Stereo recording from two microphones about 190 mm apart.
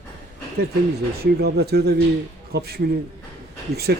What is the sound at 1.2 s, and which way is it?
Speech, 60° right (ahead or behind).